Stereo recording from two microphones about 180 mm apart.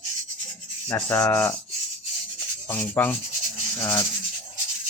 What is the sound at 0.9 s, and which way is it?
Speech, 15° left (ahead or behind).